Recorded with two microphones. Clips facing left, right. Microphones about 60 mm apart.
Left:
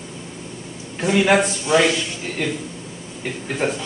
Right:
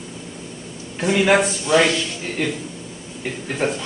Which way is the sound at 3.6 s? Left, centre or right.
Centre.